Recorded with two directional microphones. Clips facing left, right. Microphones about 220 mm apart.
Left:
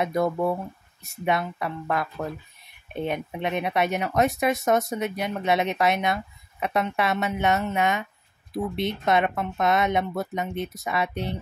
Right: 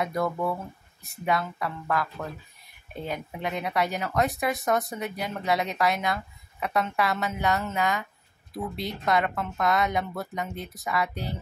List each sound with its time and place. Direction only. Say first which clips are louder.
0.0 s speech: left 4 dB; 25° left (ahead or behind)